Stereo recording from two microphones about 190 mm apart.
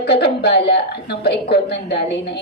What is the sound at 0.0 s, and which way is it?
A woman's voice, 60° left (ahead or behind).